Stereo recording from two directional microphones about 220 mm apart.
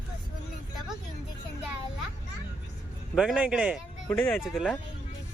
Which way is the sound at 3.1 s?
Centre (ahead or behind).